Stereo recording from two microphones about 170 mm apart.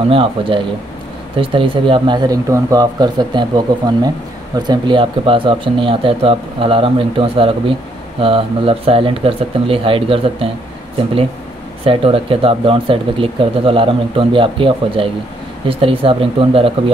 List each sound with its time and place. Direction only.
0.1 s speech: 30° right (ahead or behind)
11.8 s speech: 35° right (ahead or behind)